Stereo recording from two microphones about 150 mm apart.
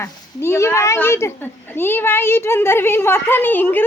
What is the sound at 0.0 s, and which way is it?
Speech, 20° left (ahead or behind).